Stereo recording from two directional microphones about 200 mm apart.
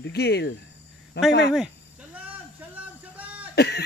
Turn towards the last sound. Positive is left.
turn(degrees=55)  # may be behind; listen again after turning